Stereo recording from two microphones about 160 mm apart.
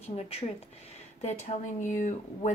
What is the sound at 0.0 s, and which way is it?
A woman's voice, 40° left (ahead or behind).